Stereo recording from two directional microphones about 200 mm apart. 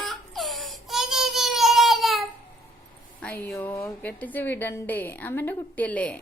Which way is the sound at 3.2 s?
5° left (ahead or behind).